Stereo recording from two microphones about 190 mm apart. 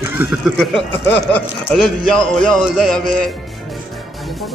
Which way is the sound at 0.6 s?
5° left (ahead or behind).